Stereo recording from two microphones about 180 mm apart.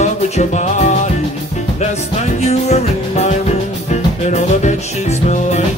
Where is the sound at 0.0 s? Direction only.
40° left (ahead or behind).